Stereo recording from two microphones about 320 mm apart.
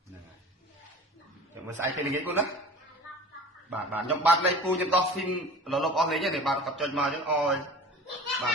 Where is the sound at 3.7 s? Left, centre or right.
Centre.